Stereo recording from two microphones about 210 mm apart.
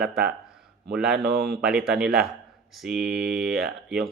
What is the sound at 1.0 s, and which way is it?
Speech, 50° right (ahead or behind).